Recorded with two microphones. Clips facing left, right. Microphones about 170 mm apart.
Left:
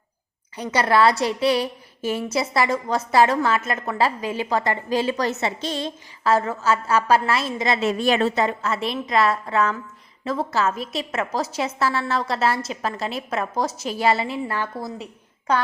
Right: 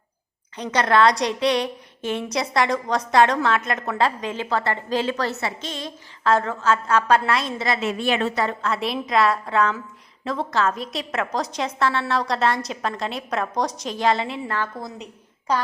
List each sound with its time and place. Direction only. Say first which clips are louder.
0.5 s a woman's voice: even; 10° left (ahead or behind)
5.5 s a woman's voice: left 5 dB; 35° left (ahead or behind)
6.2 s a woman's voice: even; 5° left (ahead or behind)
7.8 s a woman's voice: left 5 dB; 40° left (ahead or behind)
8.6 s a woman's voice: even; centre (ahead or behind)